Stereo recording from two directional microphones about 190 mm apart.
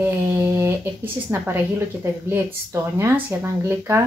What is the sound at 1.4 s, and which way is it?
Speech, 10° right (ahead or behind).